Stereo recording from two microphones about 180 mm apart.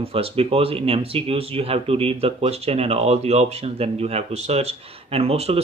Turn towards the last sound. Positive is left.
turn(degrees=-35)  # may be behind; listen again after turning